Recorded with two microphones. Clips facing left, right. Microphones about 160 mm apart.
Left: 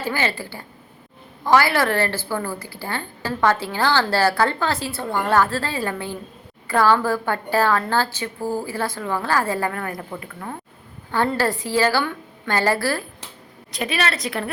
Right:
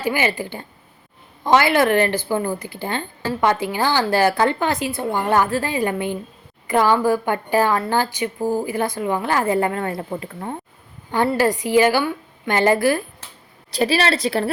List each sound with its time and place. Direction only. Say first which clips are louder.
0.0 s a woman's voice: right 3 dB; 15° right (ahead or behind)
11.1 s a woman's voice: right 3 dB; 15° right (ahead or behind)
13.7 s a woman's voice: right 6 dB; 30° right (ahead or behind)